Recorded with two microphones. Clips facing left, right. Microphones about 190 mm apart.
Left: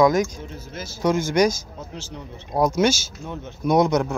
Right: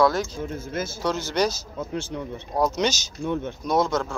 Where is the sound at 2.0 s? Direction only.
55° right (ahead or behind).